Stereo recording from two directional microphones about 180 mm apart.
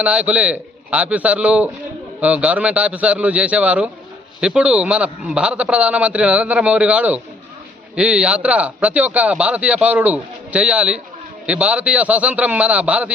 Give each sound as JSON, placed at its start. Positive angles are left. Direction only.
{"t": 0.0, "sound": "a man's voice", "side_deg": -5}